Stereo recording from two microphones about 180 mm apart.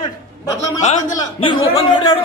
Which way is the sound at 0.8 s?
40° left (ahead or behind).